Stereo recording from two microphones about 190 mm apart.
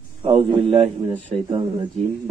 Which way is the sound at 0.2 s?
30° right (ahead or behind).